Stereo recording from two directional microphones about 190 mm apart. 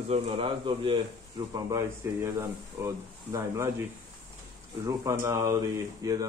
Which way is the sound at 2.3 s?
15° right (ahead or behind).